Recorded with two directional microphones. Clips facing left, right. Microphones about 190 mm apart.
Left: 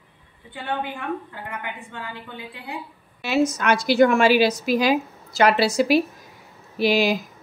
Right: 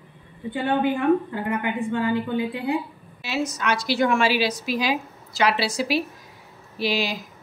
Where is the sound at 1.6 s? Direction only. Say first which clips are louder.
Right 11 dB; 15° right (ahead or behind).